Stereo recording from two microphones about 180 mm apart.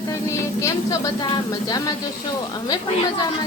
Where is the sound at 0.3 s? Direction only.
15° left (ahead or behind).